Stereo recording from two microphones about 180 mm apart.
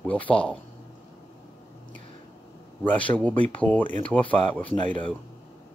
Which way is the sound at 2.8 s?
10° left (ahead or behind).